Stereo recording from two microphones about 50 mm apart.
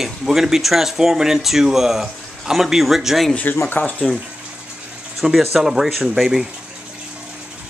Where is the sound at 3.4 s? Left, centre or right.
Left.